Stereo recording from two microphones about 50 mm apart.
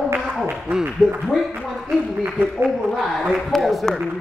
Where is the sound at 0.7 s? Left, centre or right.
Right.